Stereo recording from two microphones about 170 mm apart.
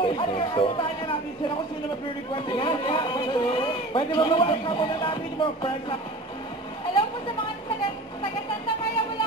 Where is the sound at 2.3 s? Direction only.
30° left (ahead or behind).